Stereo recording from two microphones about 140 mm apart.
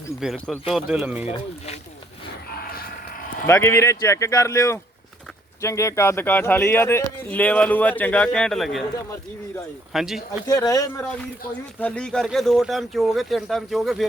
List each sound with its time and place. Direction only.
0.3 s speech: 10° left (ahead or behind)
0.7 s speech: 5° right (ahead or behind)
3.4 s speech: 20° left (ahead or behind); by 8.8 s centre (ahead or behind)
9.9 s speech: centre (ahead or behind)
10.4 s speech: 25° left (ahead or behind)
11.8 s speech: 5° left (ahead or behind)